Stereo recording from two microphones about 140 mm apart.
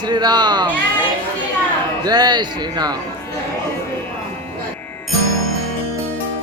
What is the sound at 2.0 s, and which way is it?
Speech, 30° right (ahead or behind).